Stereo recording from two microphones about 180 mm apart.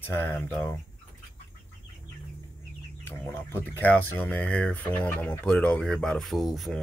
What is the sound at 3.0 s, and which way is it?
Speech, 10° left (ahead or behind).